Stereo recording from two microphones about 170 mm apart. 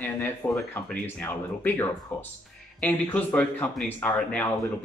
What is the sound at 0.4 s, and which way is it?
Speech, 15° left (ahead or behind).